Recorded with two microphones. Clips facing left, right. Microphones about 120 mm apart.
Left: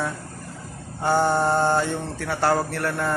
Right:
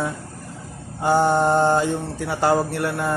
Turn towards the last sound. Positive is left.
turn(degrees=-15)  # may be behind; listen again after turning